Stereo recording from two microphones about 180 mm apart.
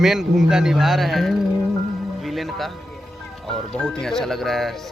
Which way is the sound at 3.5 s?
5° left (ahead or behind).